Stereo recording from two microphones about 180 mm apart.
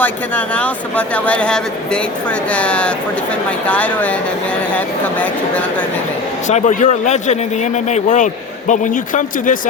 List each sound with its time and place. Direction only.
0.0 s speech: 10° left (ahead or behind)
6.5 s a man's voice: 45° left (ahead or behind)